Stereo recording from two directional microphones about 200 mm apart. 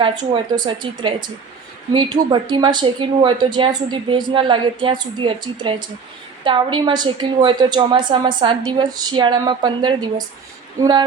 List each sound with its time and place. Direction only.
0.0 s a woman's voice: 20° right (ahead or behind)